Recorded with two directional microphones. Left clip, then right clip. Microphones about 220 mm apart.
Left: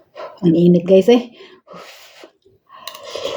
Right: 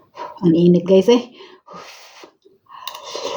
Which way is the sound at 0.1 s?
Centre (ahead or behind).